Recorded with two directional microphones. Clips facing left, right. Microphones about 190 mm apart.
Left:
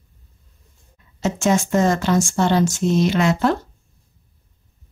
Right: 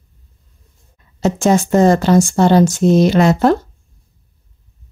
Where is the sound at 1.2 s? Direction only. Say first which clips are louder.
Right 5 dB; 35° right (ahead or behind).